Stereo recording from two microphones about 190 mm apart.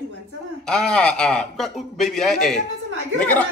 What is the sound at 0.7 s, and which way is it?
A man's voice, 5° left (ahead or behind).